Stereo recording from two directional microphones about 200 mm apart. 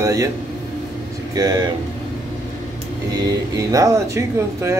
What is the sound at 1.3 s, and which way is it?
Speech, 20° right (ahead or behind).